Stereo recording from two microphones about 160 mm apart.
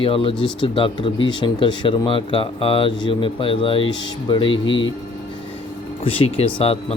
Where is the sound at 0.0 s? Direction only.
35° left (ahead or behind).